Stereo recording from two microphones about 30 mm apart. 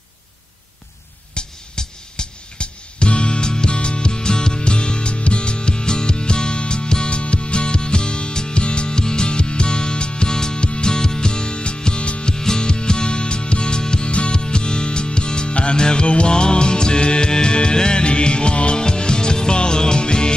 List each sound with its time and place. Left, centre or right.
1.3 s music: left
12.3 s music: left
18.8 s music: left